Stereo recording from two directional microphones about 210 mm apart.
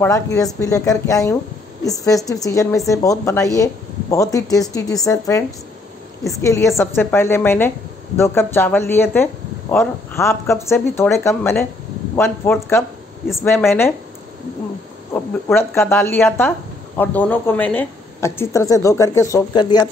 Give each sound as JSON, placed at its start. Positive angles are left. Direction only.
{"t": 0.0, "sound": "speech", "side_deg": 15}
{"t": 6.4, "sound": "speech", "side_deg": 15}
{"t": 15.1, "sound": "speech", "side_deg": 10}